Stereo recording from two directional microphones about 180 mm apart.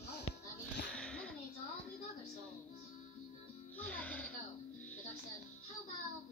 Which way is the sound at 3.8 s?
10° left (ahead or behind).